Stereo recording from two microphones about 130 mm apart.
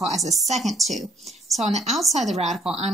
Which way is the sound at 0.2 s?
Centre (ahead or behind).